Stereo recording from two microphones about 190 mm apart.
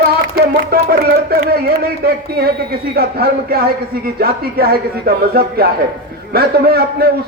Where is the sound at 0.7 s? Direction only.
55° right (ahead or behind).